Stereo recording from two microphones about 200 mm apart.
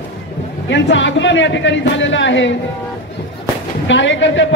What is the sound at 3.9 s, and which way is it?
Speech, 65° left (ahead or behind).